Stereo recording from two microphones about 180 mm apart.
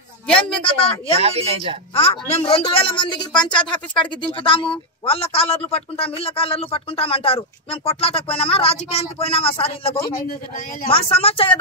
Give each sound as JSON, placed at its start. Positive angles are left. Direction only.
{"t": 0.6, "sound": "a woman's voice", "side_deg": 30}
{"t": 1.1, "sound": "a woman's voice", "side_deg": -35}
{"t": 2.0, "sound": "a woman's voice", "side_deg": 35}